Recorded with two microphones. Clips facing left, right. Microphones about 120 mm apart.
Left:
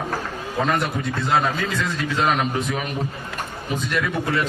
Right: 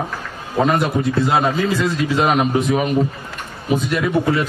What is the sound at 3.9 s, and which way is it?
Speech, 25° right (ahead or behind).